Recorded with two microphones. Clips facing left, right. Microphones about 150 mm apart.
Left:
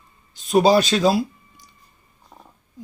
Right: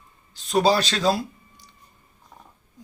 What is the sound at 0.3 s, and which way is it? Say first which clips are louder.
Speech: left 4 dB; 15° left (ahead or behind).